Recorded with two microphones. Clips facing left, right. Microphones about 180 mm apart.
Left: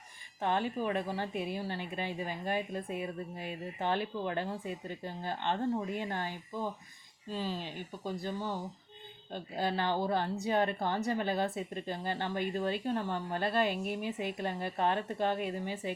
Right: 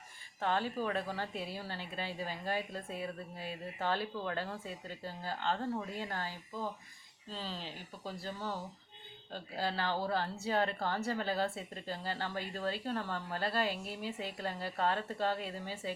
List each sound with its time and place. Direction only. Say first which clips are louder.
0.4 s a woman's voice: left 2 dB; 15° left (ahead or behind)